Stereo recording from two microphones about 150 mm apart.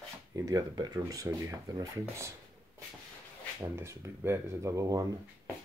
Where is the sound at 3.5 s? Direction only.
20° right (ahead or behind).